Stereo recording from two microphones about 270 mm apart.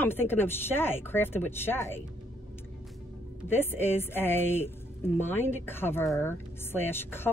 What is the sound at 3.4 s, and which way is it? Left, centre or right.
Speech, centre.